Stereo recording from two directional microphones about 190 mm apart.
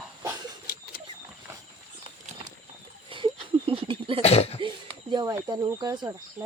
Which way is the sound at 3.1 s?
25° right (ahead or behind).